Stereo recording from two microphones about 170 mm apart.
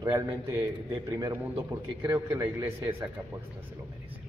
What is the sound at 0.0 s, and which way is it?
A man's voice, 15° right (ahead or behind).